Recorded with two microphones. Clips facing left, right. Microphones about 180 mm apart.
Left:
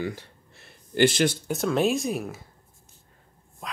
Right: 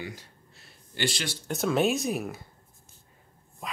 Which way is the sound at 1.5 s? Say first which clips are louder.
Left 2 dB; centre (ahead or behind).